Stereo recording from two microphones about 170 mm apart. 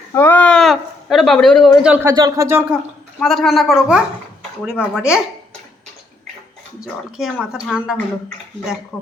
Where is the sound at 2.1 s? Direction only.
20° right (ahead or behind).